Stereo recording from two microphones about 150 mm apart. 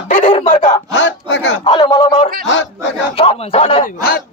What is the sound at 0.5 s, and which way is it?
Speech, 55° left (ahead or behind).